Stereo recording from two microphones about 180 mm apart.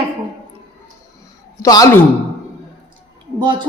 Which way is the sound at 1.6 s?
20° left (ahead or behind).